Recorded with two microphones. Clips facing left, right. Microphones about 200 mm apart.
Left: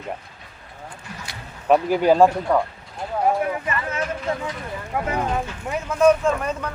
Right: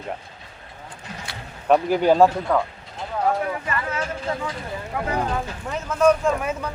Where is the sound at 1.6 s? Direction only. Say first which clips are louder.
Left 1 dB; 5° left (ahead or behind); by 4.0 s 20° left (ahead or behind).